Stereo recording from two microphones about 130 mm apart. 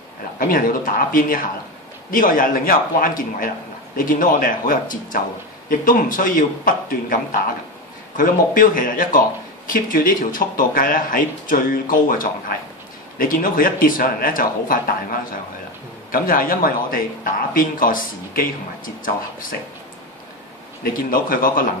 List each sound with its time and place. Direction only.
0.4 s a man's voice: 90° left
8.2 s a man's voice: 90° left
21.1 s a man's voice: 90° left